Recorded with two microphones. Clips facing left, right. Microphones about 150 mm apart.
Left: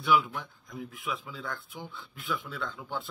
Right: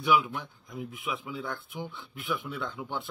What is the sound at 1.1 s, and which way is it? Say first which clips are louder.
Speech: right 2 dB; 20° right (ahead or behind).